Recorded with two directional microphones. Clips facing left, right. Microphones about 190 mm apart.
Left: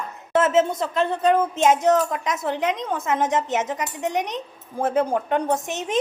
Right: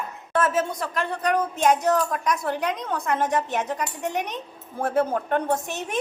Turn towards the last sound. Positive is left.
turn(degrees=20)  # may be behind; listen again after turning